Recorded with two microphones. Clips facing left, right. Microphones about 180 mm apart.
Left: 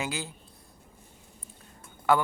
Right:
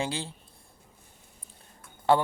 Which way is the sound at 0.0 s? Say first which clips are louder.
Right 2 dB; 30° right (ahead or behind).